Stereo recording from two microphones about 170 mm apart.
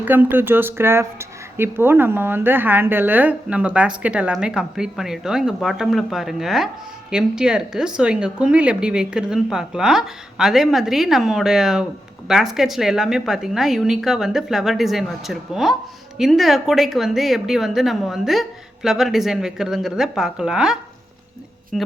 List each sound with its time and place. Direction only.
0.0 s speech: 10° right (ahead or behind)